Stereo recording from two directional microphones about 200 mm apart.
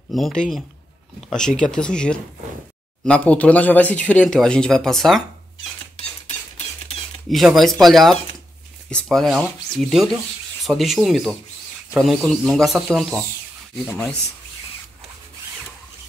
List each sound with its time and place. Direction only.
0.1 s speech: centre (ahead or behind)
5.9 s a sound: 30° left (ahead or behind)
7.2 s speech: centre (ahead or behind)